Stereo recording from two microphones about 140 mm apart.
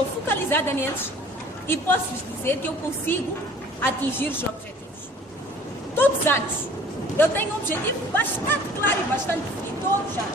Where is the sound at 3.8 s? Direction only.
15° left (ahead or behind).